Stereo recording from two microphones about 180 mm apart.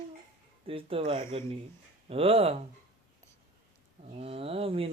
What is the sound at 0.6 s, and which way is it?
Speech, 30° right (ahead or behind).